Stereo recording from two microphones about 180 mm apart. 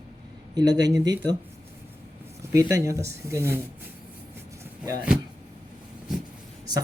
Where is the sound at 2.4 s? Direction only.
15° right (ahead or behind).